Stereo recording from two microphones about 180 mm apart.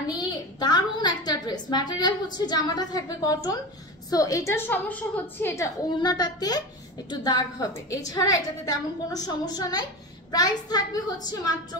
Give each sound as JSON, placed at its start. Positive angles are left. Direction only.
{"t": 0.1, "sound": "a woman's voice", "side_deg": 25}